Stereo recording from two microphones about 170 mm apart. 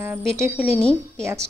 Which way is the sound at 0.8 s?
5° left (ahead or behind).